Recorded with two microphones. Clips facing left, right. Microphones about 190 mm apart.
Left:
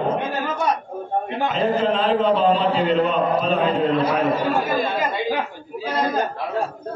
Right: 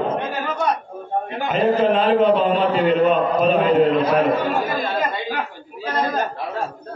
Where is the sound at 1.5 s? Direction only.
55° right (ahead or behind).